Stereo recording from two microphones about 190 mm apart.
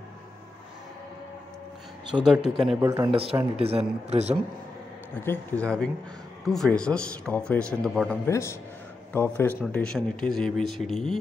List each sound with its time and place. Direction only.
2.1 s speech: 5° right (ahead or behind)
2.8 s speech: 15° right (ahead or behind)
3.1 s speech: 30° right (ahead or behind)
5.2 s speech: 10° left (ahead or behind)
8.3 s speech: 15° left (ahead or behind)